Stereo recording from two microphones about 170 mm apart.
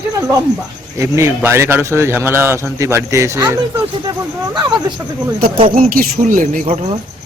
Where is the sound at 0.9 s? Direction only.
15° right (ahead or behind).